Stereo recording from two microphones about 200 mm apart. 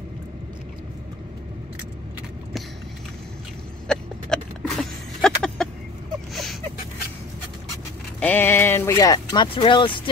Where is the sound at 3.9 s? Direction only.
Centre (ahead or behind).